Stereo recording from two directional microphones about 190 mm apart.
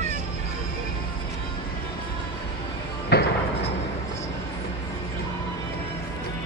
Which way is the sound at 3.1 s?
60° left (ahead or behind).